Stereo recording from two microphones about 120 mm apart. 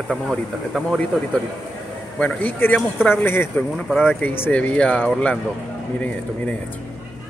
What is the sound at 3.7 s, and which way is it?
Speech, centre (ahead or behind).